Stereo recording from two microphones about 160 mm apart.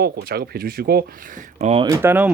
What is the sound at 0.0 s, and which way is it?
Speech, 75° right (ahead or behind).